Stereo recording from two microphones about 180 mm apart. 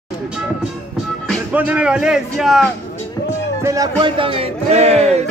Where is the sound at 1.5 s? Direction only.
10° right (ahead or behind).